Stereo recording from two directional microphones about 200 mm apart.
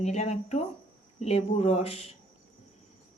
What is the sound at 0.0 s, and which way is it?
Speech, 35° left (ahead or behind).